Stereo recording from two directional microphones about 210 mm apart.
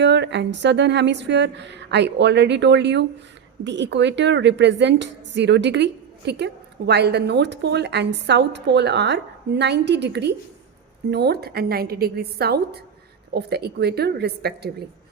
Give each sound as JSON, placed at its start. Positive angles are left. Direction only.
{"t": 0.0, "sound": "a woman's voice", "side_deg": -55}